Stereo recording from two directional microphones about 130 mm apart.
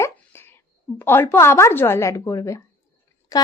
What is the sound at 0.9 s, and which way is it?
A woman's voice, 15° left (ahead or behind).